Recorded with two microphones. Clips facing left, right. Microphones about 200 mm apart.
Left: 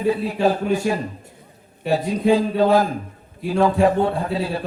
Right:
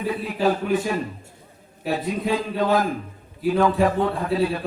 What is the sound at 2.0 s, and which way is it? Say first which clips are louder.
Speech: left 8 dB; 30° left (ahead or behind).